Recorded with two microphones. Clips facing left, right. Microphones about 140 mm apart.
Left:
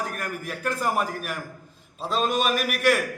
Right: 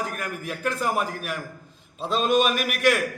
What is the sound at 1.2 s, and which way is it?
Speech, 45° left (ahead or behind).